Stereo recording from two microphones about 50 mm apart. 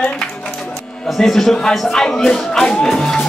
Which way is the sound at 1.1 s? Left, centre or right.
Centre.